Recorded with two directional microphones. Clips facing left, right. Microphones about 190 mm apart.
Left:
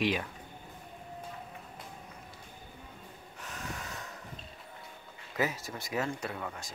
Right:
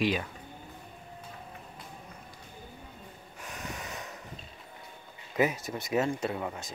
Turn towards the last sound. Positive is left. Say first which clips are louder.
# right 5 dB
turn(degrees=-20)  # may be behind; listen again after turning